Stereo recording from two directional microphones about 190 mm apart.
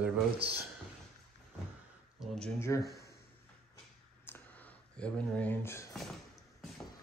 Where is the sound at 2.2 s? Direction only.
5° left (ahead or behind).